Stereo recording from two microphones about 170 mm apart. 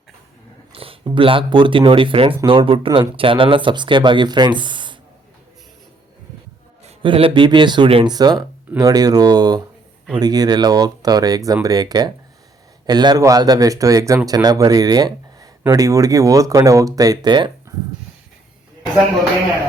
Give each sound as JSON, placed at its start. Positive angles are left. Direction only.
{"t": 0.7, "sound": "speech", "side_deg": -35}
{"t": 6.8, "sound": "speech", "side_deg": -30}